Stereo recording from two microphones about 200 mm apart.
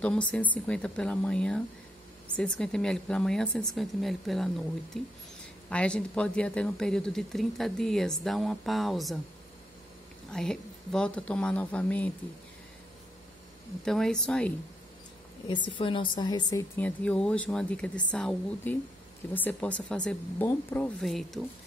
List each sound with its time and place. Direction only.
0.0 s a woman's voice: 5° left (ahead or behind)
10.3 s a woman's voice: 5° left (ahead or behind)
13.8 s a woman's voice: centre (ahead or behind)
15.7 s a woman's voice: 25° left (ahead or behind)
16.7 s a woman's voice: 5° left (ahead or behind)